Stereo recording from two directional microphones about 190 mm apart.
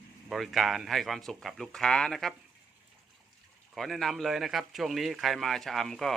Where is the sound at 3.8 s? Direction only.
Centre (ahead or behind).